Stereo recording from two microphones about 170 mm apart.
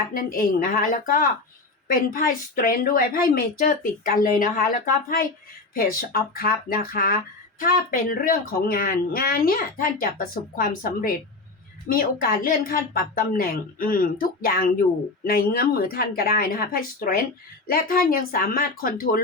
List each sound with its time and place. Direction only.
0.1 s a woman's voice: 55° left (ahead or behind)